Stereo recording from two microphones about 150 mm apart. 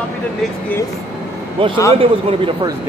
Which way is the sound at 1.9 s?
35° right (ahead or behind).